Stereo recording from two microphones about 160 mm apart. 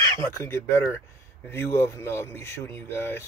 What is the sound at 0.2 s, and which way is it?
Speech, 15° left (ahead or behind).